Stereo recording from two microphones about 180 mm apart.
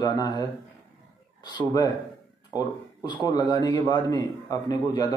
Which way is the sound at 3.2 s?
20° left (ahead or behind).